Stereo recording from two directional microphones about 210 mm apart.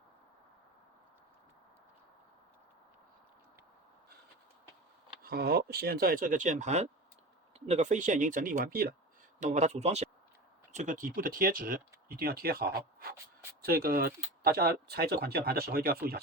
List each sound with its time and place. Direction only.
5.2 s speech: 45° right (ahead or behind)
9.4 s speech: 35° right (ahead or behind)